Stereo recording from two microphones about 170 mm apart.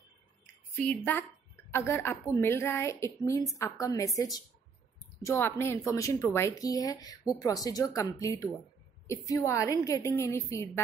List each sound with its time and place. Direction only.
0.7 s a woman's voice: 10° left (ahead or behind)